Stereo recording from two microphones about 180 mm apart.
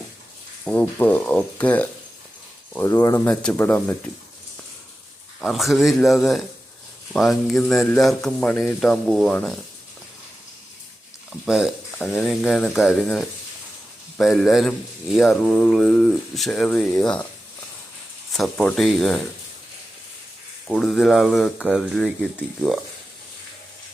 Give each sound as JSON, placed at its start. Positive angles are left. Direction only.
{"t": 0.6, "sound": "speech", "side_deg": 10}
{"t": 3.2, "sound": "speech", "side_deg": 5}
{"t": 5.4, "sound": "speech", "side_deg": 0}
{"t": 11.3, "sound": "speech", "side_deg": -5}
{"t": 18.3, "sound": "speech", "side_deg": 5}
{"t": 20.7, "sound": "speech", "side_deg": 0}